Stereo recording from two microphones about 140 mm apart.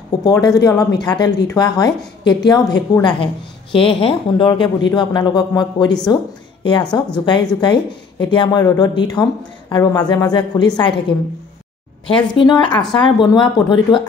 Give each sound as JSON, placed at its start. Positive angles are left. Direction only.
{"t": 0.2, "sound": "a woman's voice", "side_deg": 25}